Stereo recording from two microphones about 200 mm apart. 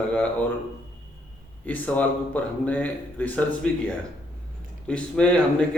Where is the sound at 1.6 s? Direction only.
10° left (ahead or behind).